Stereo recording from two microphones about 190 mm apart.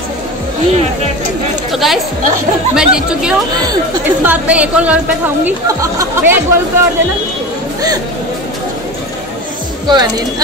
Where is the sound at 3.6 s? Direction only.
20° right (ahead or behind).